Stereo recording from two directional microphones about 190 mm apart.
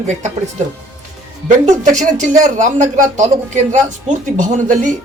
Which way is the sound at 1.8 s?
40° right (ahead or behind).